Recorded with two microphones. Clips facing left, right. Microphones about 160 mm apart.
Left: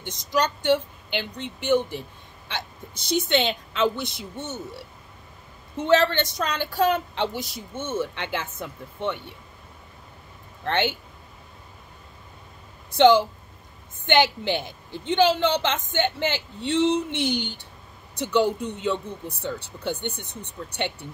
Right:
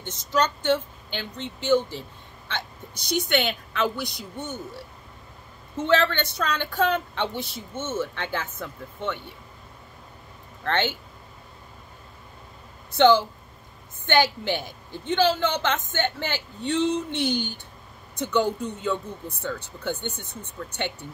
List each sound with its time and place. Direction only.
0.0 s speech: 15° left (ahead or behind)
5.8 s speech: 15° left (ahead or behind)
10.6 s speech: 15° left (ahead or behind)
12.9 s a woman's voice: 15° left (ahead or behind)